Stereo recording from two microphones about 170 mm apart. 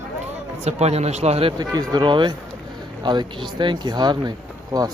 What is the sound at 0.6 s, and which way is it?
Speech, 40° right (ahead or behind).